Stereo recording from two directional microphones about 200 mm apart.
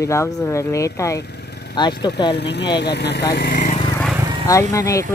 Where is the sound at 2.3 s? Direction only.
60° left (ahead or behind).